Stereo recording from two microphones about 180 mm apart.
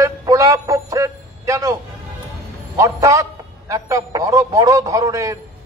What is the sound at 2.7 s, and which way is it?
A man's voice, 20° right (ahead or behind).